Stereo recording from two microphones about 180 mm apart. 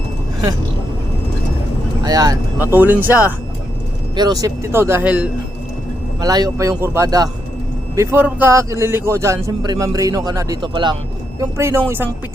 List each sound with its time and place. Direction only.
2.0 s a man's voice: 20° right (ahead or behind)
2.6 s a man's voice: 10° right (ahead or behind)
4.1 s a man's voice: 20° right (ahead or behind)
6.1 s a man's voice: 20° right (ahead or behind)